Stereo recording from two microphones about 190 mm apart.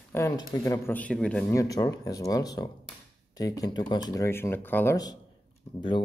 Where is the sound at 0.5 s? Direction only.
15° left (ahead or behind).